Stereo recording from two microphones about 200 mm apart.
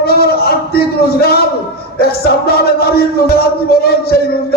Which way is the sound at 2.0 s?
50° left (ahead or behind).